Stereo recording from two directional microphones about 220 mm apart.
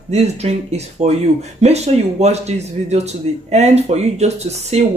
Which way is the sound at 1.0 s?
30° right (ahead or behind).